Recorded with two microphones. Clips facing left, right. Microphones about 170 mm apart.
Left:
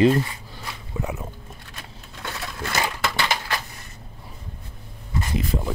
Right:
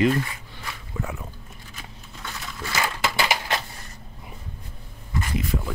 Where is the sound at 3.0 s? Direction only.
5° right (ahead or behind).